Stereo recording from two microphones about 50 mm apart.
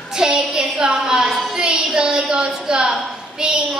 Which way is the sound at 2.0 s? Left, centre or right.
Centre.